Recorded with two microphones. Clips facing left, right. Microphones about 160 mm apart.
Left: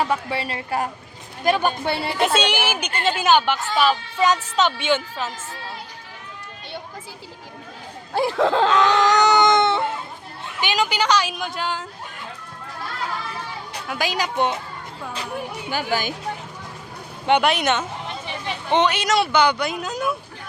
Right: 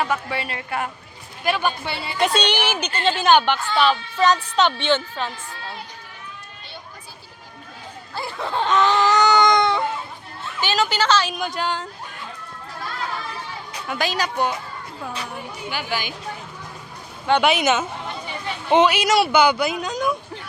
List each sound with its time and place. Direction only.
0.0 s a woman's voice: 30° left (ahead or behind); by 2.1 s 60° left (ahead or behind)
2.1 s a woman's voice: 5° left (ahead or behind)
8.1 s a sound: 90° left
9.0 s baby cry: 20° left (ahead or behind)
10.6 s a woman's voice: 15° left (ahead or behind)
11.3 s speech: centre (ahead or behind)
13.8 s a woman's voice: 5° left (ahead or behind)
14.1 s a woman's voice: 20° left (ahead or behind)
15.7 s speech: 45° left (ahead or behind)
17.4 s speech: centre (ahead or behind)